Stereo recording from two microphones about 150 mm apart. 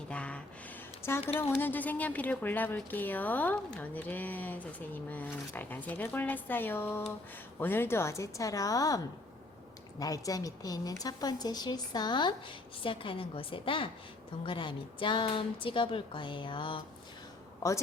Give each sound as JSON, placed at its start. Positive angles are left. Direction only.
{"t": 0.1, "sound": "a sound", "side_deg": 10}
{"t": 1.4, "sound": "a woman's voice", "side_deg": 15}
{"t": 10.0, "sound": "a woman's voice", "side_deg": 25}